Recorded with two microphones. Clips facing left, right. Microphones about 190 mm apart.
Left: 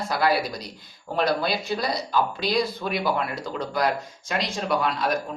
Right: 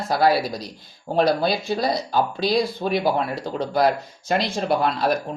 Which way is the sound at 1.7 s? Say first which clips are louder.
Right 3 dB; 30° right (ahead or behind).